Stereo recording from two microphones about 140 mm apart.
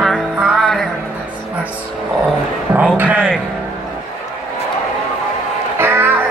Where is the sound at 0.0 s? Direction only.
Centre (ahead or behind).